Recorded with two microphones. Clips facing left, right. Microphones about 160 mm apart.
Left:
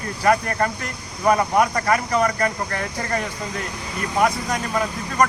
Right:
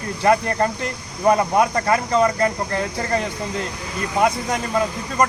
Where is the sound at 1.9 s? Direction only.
25° right (ahead or behind).